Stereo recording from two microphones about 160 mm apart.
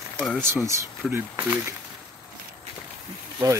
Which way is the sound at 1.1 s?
15° right (ahead or behind).